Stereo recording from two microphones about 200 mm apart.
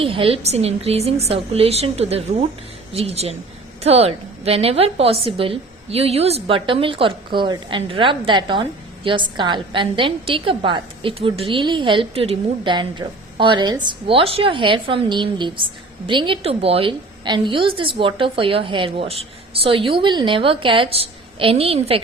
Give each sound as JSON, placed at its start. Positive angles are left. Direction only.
{"t": 0.0, "sound": "a woman's voice", "side_deg": -25}